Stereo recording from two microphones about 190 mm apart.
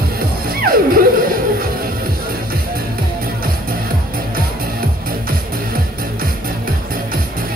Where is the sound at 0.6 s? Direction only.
50° right (ahead or behind).